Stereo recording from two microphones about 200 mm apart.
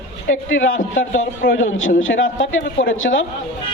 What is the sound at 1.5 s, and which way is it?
A man's voice, 75° left (ahead or behind).